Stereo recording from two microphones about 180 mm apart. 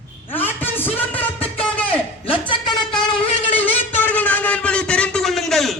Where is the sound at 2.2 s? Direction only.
30° left (ahead or behind).